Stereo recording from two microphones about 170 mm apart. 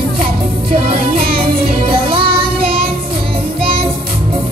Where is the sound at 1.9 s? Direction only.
30° right (ahead or behind).